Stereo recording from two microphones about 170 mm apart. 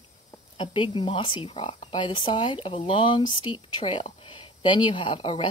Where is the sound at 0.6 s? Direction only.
30° left (ahead or behind).